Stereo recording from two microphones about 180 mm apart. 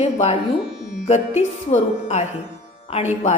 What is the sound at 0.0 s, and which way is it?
A woman's voice, 40° left (ahead or behind).